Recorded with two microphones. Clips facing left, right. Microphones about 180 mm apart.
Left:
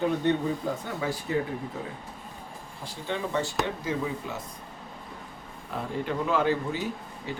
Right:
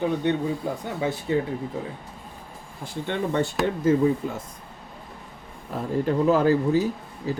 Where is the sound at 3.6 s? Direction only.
50° right (ahead or behind).